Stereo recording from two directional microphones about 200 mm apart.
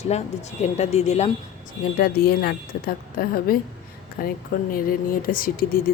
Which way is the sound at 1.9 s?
50° left (ahead or behind).